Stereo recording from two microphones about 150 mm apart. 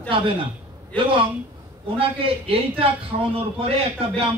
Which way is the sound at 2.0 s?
40° right (ahead or behind).